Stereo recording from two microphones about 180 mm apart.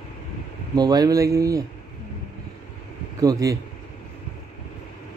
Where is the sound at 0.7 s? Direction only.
20° right (ahead or behind).